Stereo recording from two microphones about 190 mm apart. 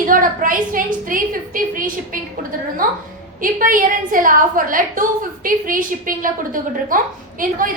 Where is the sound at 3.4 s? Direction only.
45° right (ahead or behind).